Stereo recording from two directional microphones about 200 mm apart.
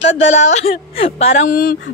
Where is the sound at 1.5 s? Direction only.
45° left (ahead or behind).